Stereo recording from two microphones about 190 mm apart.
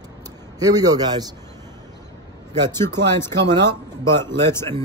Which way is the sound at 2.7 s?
15° left (ahead or behind).